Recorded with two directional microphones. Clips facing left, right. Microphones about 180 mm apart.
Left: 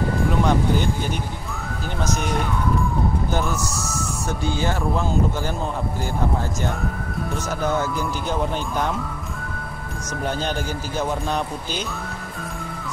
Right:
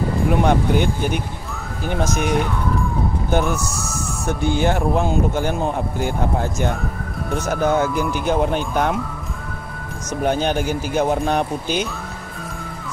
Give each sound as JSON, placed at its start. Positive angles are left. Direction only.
{"t": 0.4, "sound": "speech", "side_deg": -60}
{"t": 4.3, "sound": "speech", "side_deg": -60}
{"t": 7.4, "sound": "speech", "side_deg": -55}
{"t": 11.0, "sound": "speech", "side_deg": -55}